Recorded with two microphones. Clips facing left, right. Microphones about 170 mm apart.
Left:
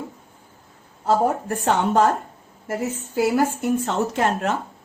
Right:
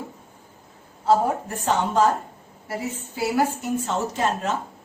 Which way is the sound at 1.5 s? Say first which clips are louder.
Left 3 dB; 55° left (ahead or behind).